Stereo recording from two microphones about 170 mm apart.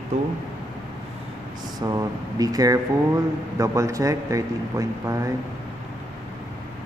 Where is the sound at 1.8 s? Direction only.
20° right (ahead or behind).